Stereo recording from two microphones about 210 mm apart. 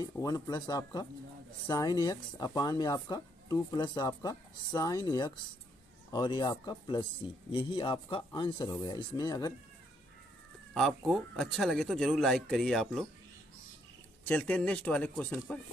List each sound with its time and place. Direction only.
0.0 s speech: 15° left (ahead or behind)
10.7 s speech: centre (ahead or behind)
14.2 s speech: 5° left (ahead or behind)